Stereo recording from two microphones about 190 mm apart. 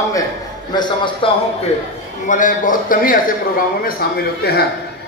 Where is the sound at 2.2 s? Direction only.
45° left (ahead or behind).